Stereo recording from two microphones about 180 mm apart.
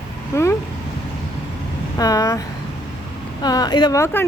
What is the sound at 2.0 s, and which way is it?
Speech, 20° left (ahead or behind).